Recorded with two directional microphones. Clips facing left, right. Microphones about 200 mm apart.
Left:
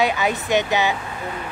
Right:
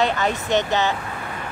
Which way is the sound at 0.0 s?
10° left (ahead or behind).